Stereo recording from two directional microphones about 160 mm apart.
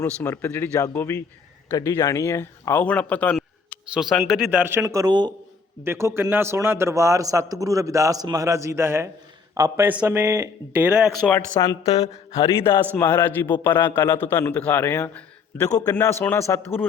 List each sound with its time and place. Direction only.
0.0 s speech: 15° left (ahead or behind)
3.3 s a sound: centre (ahead or behind)
4.3 s speech: 5° right (ahead or behind); by 5.3 s 25° right (ahead or behind)
5.8 s a man's voice: 15° right (ahead or behind)
11.3 s speech: 15° left (ahead or behind)
11.8 s speech: 40° left (ahead or behind)
12.3 s a man's voice: 20° left (ahead or behind)